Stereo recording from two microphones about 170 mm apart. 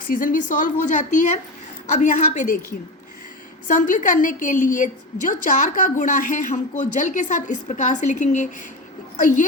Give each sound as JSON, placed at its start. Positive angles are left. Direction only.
{"t": 0.1, "sound": "a woman's voice", "side_deg": 50}
{"t": 3.7, "sound": "a woman's voice", "side_deg": 50}